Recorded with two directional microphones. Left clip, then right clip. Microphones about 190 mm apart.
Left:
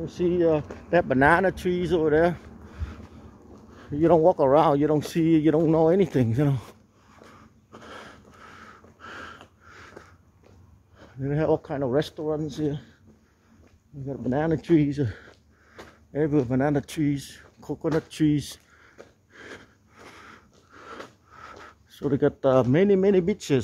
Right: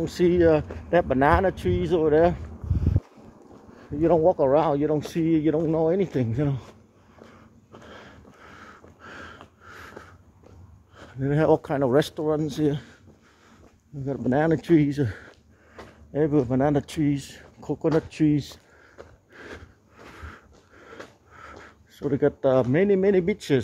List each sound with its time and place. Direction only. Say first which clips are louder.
0.0 s speech: right 4 dB; 25° right (ahead or behind)
0.3 s speech: right 2 dB; 5° right (ahead or behind)
0.8 s speech: left 1 dB; 15° left (ahead or behind)
3.7 s speech: left 1 dB; 15° left (ahead or behind)
7.7 s a sound: left 2 dB; 30° left (ahead or behind)
8.4 s a sound: right 1 dB; 10° left (ahead or behind)
9.0 s sniff: left 2 dB; 15° left (ahead or behind)
9.7 s sniff: right 4 dB; 15° right (ahead or behind)
11.0 s speech: right 3 dB; 20° right (ahead or behind)
14.3 s speech: right 2 dB; 5° right (ahead or behind)
17.8 s a sound: right 2 dB; 5° left (ahead or behind)
20.7 s a sound: left 4 dB; 20° left (ahead or behind)
21.0 s speech: even; 10° left (ahead or behind)